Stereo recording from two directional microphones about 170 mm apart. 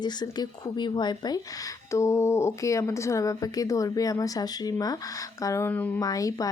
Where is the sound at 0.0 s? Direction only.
25° left (ahead or behind).